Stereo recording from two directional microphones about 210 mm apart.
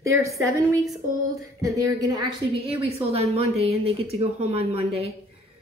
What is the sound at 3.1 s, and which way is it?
Speech, 30° right (ahead or behind).